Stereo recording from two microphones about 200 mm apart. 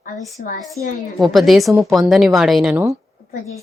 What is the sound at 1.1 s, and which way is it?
A woman's voice, centre (ahead or behind).